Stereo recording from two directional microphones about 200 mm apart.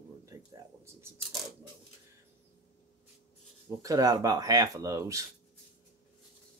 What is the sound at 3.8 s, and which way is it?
Speech, 20° right (ahead or behind).